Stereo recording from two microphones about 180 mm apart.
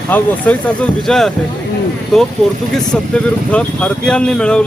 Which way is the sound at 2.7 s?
5° left (ahead or behind).